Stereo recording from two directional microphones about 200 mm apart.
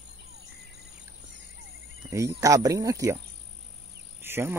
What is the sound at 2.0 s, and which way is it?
Speech, 15° right (ahead or behind).